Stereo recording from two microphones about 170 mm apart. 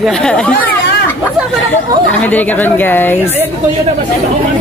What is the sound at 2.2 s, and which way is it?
Speech, 10° left (ahead or behind).